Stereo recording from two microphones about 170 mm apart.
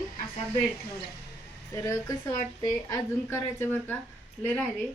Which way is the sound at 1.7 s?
20° left (ahead or behind).